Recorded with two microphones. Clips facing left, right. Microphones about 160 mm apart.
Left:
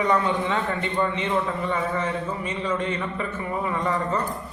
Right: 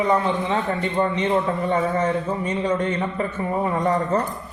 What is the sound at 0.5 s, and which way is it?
Speech, 35° right (ahead or behind).